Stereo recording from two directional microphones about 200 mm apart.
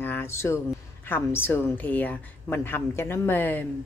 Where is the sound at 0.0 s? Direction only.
10° left (ahead or behind).